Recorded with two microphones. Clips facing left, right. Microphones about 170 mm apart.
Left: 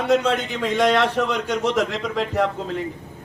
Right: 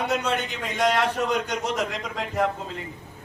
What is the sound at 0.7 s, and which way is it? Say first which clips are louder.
Speech: left 4 dB; 90° left.